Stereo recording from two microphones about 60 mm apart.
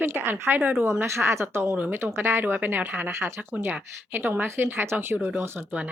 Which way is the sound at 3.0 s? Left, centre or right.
Right.